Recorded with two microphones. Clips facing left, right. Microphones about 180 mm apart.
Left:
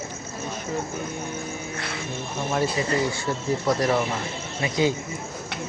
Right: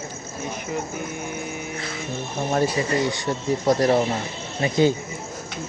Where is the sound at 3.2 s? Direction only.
25° right (ahead or behind).